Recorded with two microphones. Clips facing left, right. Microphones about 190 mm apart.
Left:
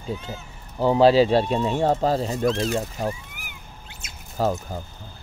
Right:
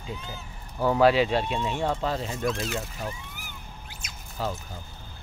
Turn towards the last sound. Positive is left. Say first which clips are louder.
# left 8 dB
turn(degrees=45)  # may be behind; listen again after turning